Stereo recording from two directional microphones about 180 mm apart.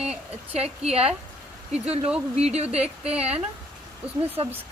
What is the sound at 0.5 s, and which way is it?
Speech, 35° right (ahead or behind).